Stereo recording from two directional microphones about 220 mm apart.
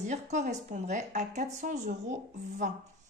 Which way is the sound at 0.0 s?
30° right (ahead or behind).